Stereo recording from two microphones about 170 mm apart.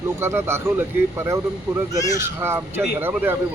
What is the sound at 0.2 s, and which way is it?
Speech, 15° right (ahead or behind).